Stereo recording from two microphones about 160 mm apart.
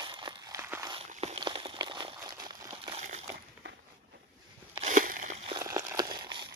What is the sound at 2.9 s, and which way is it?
Crushing, 45° right (ahead or behind).